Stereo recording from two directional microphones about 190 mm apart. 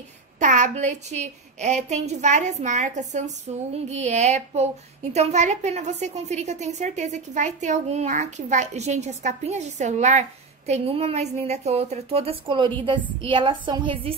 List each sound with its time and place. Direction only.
0.4 s a woman's voice: 40° right (ahead or behind)